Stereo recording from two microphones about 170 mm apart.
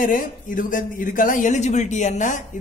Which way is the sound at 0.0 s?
50° left (ahead or behind).